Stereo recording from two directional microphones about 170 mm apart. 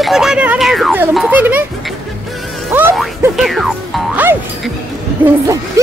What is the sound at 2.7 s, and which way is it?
Speech, 10° right (ahead or behind).